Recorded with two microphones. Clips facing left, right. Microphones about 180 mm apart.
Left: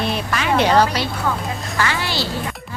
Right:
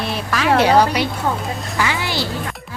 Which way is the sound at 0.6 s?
10° right (ahead or behind).